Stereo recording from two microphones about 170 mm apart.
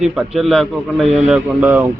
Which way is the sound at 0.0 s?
5° right (ahead or behind).